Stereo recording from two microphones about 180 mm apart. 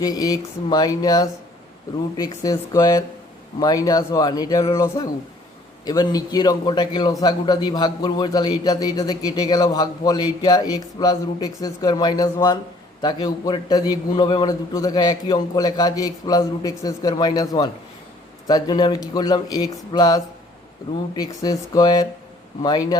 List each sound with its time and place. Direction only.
0.0 s a man's voice: 20° left (ahead or behind)